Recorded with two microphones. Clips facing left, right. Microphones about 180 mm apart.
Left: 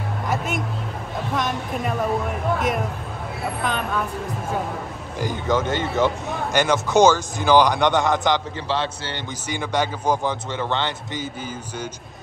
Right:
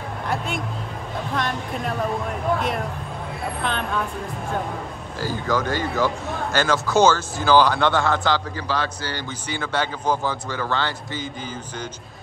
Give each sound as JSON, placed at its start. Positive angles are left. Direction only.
{"t": 1.3, "sound": "speech", "side_deg": 0}
{"t": 3.6, "sound": "speech", "side_deg": 5}
{"t": 5.2, "sound": "speech", "side_deg": 20}
{"t": 9.5, "sound": "speech", "side_deg": 15}